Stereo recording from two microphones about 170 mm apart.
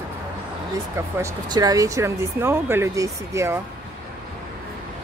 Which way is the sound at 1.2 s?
20° right (ahead or behind).